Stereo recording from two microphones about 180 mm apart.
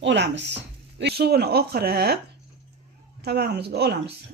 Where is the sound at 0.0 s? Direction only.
75° right (ahead or behind); by 2.1 s 60° right (ahead or behind).